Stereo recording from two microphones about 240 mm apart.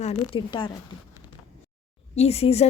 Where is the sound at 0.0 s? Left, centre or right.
Left.